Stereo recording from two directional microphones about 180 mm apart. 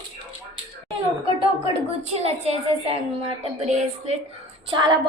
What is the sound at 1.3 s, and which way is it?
A woman's voice, 30° right (ahead or behind).